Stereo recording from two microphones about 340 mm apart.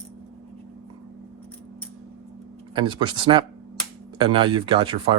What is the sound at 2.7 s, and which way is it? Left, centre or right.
Speech, centre.